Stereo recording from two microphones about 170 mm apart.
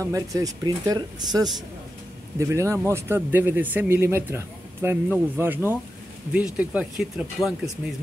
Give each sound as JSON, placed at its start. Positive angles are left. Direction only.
{"t": 0.0, "sound": "speech", "side_deg": -20}